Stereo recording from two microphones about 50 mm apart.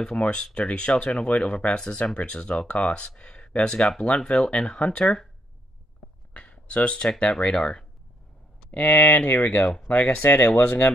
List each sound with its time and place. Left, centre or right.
0.0 s speech: left
5.0 s speech: centre
6.3 s a sound: left
7.1 s speech: centre
8.6 s speech: left